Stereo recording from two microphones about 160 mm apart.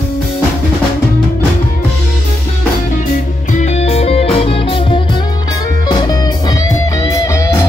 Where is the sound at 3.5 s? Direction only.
45° left (ahead or behind).